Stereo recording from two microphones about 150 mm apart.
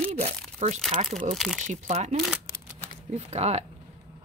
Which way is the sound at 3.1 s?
45° right (ahead or behind).